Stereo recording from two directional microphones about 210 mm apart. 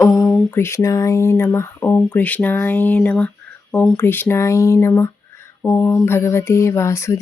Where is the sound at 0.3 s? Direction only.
5° left (ahead or behind).